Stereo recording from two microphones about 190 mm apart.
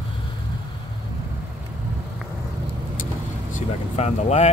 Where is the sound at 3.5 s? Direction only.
35° left (ahead or behind).